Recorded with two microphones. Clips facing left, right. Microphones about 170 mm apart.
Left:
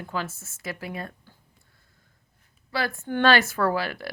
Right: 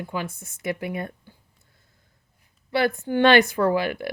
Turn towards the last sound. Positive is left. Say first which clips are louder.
# right 4 dB
turn(degrees=-20)  # may be behind; listen again after turning